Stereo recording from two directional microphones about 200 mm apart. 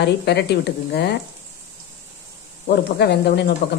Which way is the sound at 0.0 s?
55° left (ahead or behind).